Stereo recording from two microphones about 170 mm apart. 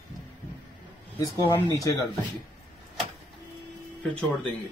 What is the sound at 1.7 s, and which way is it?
Speech, 20° left (ahead or behind).